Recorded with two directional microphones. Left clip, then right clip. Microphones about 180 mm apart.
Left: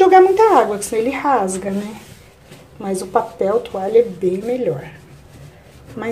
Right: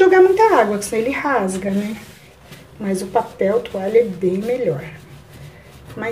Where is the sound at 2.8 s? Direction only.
10° left (ahead or behind).